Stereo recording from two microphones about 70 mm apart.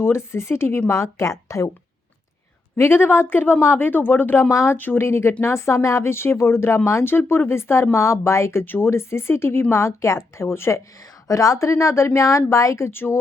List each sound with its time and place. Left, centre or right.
0.0 s speech: left
2.7 s speech: left
4.4 s speech: left
4.8 s speech: left
5.0 s speech: left
8.6 s speech: left
8.9 s speech: left
11.3 s speech: left